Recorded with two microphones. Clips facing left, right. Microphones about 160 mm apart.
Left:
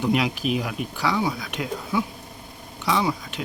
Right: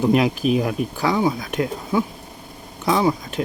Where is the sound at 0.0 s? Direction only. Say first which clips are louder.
Right 5 dB; 40° right (ahead or behind).